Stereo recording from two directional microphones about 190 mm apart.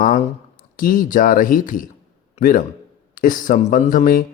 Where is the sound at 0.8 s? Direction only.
45° left (ahead or behind).